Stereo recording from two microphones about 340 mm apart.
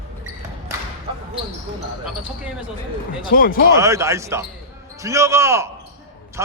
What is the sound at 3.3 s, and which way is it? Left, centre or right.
Speech, left.